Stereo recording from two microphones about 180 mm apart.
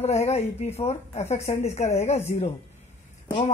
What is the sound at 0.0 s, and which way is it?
A woman's voice, 35° left (ahead or behind).